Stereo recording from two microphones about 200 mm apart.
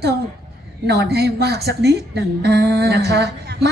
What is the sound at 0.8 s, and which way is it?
A woman's voice, 55° right (ahead or behind).